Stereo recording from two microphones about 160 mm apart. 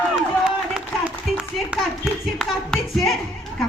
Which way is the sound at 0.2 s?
5° right (ahead or behind).